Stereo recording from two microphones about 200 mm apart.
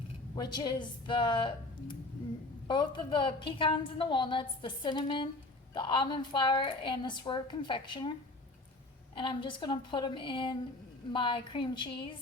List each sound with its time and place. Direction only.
0.3 s a woman's voice: 20° left (ahead or behind)
9.1 s a woman's voice: 25° left (ahead or behind)